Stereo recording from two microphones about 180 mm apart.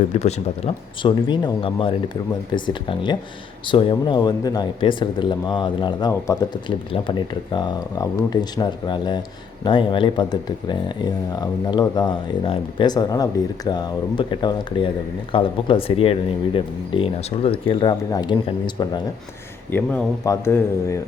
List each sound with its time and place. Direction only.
0.1 s speech: 35° left (ahead or behind)
19.7 s a man's voice: 10° left (ahead or behind)